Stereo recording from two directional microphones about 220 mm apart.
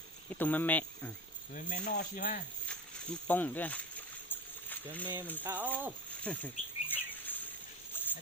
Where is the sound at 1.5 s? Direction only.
35° left (ahead or behind).